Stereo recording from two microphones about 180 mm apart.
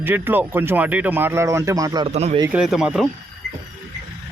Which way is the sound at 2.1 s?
40° right (ahead or behind).